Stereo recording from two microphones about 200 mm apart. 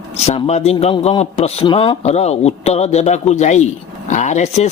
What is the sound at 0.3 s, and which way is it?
Speech, 30° left (ahead or behind).